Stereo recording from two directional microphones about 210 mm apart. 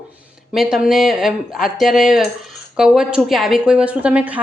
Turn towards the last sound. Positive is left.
turn(degrees=-5)  # may be behind; listen again after turning